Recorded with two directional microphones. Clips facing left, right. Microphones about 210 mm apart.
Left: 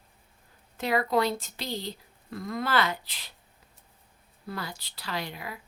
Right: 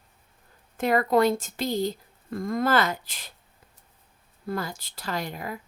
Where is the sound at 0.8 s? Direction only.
50° right (ahead or behind).